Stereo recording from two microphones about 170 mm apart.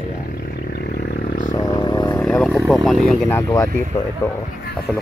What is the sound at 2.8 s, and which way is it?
Speech, centre (ahead or behind).